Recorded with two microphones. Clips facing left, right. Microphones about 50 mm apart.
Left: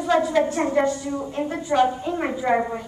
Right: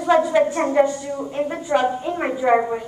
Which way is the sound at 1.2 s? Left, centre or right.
Centre.